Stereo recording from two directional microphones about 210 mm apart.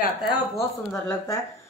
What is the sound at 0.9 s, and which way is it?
Speech, 15° left (ahead or behind).